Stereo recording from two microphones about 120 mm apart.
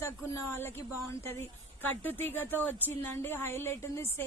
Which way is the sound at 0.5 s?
20° left (ahead or behind).